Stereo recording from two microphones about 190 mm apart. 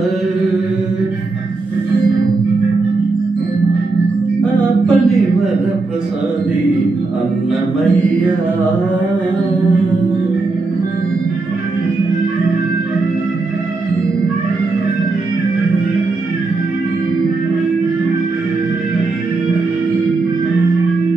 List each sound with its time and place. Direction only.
4.4 s music: 5° left (ahead or behind)